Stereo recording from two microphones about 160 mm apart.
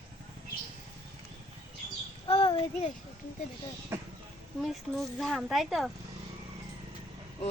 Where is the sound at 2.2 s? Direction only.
35° left (ahead or behind).